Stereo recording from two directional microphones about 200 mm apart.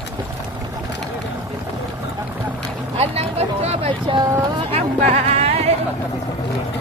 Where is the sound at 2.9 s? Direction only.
30° right (ahead or behind).